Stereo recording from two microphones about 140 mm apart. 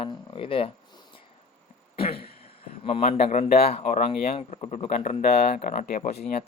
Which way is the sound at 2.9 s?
45° left (ahead or behind).